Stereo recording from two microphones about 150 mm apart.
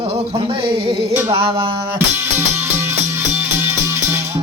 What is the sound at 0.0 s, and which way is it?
Music, 40° right (ahead or behind).